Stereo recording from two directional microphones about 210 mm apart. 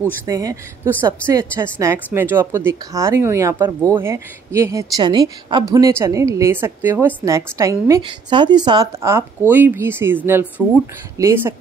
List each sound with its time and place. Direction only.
0.3 s speech: 15° right (ahead or behind)